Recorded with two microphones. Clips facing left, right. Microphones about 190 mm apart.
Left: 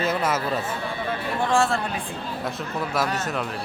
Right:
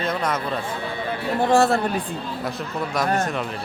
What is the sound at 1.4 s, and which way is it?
Speech, 40° right (ahead or behind).